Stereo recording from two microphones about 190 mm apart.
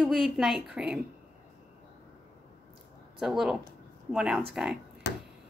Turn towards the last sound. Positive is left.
turn(degrees=70)  # may be behind; listen again after turning